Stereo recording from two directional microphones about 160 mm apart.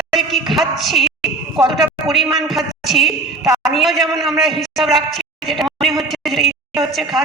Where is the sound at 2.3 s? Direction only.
Centre (ahead or behind).